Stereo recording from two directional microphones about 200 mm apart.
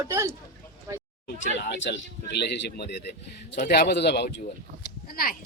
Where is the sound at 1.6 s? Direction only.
60° left (ahead or behind).